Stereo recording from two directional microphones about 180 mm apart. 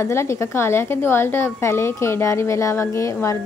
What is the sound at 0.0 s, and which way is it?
A woman's voice, 15° left (ahead or behind).